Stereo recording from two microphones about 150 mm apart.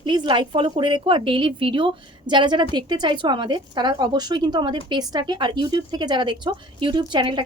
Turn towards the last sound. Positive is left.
turn(degrees=-30)  # may be behind; listen again after turning